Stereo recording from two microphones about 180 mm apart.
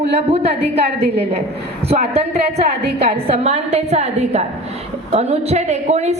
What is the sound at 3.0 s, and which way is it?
A woman's voice, 35° right (ahead or behind).